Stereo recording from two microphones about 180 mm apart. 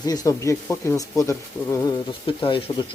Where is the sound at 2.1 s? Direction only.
30° left (ahead or behind).